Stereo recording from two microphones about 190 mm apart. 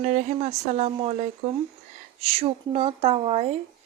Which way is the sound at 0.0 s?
40° right (ahead or behind).